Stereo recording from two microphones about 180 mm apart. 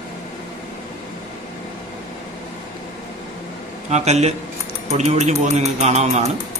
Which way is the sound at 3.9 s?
35° right (ahead or behind).